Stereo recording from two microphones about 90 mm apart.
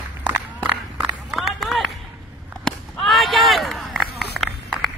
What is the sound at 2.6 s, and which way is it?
Whip, centre (ahead or behind).